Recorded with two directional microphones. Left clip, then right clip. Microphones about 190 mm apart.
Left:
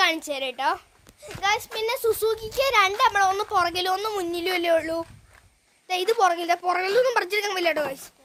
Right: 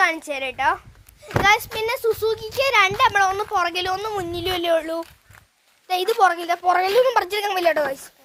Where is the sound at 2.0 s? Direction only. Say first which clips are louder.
Right 1 dB; 10° left (ahead or behind).